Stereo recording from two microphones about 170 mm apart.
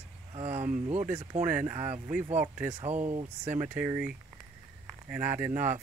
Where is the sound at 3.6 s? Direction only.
10° right (ahead or behind).